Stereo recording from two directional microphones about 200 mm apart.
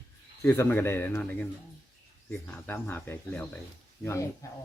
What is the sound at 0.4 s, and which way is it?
Speech, 15° left (ahead or behind).